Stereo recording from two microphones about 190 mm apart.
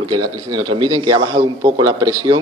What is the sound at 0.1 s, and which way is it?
A man's voice, 25° right (ahead or behind).